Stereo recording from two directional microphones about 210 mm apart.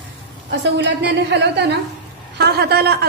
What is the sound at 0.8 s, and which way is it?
A woman's voice, 55° right (ahead or behind).